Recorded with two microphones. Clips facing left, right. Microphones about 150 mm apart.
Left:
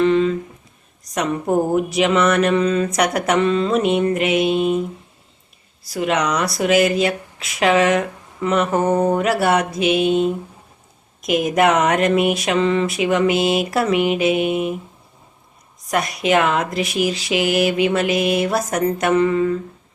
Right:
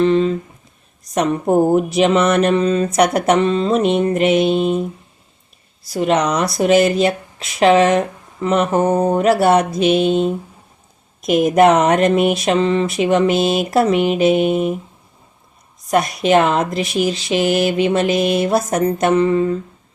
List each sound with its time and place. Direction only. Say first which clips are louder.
0.0 s a sound: right 1 dB; 30° right (ahead or behind)
1.1 s speech: right 4 dB; 30° right (ahead or behind)
5.9 s speech: right 3 dB; 30° right (ahead or behind)
11.5 s speech: right 4 dB; 30° right (ahead or behind)
13.6 s a sound: right 3 dB; 30° right (ahead or behind)
15.9 s speech: right 4 dB; 30° right (ahead or behind)